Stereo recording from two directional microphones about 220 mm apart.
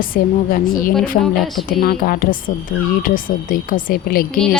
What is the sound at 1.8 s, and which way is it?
A woman's voice, 40° left (ahead or behind).